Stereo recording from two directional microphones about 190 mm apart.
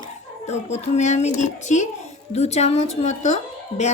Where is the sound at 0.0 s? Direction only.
35° left (ahead or behind).